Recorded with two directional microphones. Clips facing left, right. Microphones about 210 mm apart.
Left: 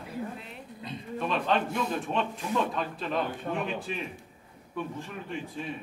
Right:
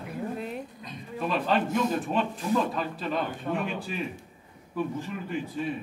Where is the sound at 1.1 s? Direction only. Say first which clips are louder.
Right 2 dB; 5° right (ahead or behind).